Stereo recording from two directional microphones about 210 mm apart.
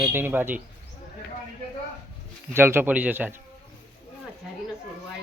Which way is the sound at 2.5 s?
10° right (ahead or behind).